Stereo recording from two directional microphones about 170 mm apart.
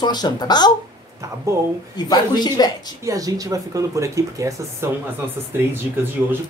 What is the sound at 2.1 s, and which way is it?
Speech, 25° left (ahead or behind).